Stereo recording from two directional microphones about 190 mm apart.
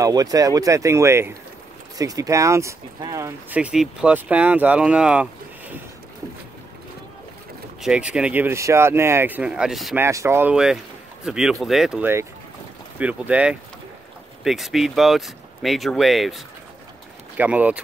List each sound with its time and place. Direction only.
0.0 s speech: 20° right (ahead or behind)
7.8 s speech: 5° right (ahead or behind)
9.9 s speech: 15° right (ahead or behind)